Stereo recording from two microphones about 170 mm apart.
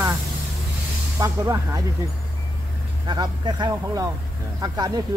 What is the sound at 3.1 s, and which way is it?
Speech, 25° right (ahead or behind).